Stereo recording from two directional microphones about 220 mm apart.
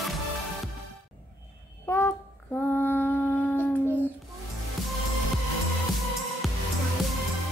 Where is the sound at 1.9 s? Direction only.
10° left (ahead or behind).